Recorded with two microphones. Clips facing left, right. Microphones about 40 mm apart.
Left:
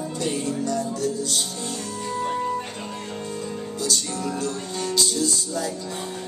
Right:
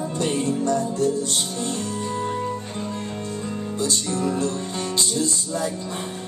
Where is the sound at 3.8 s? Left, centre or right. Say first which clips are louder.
Right 3 dB; right.